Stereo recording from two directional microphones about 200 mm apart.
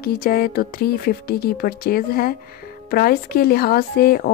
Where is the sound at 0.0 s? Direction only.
50° left (ahead or behind).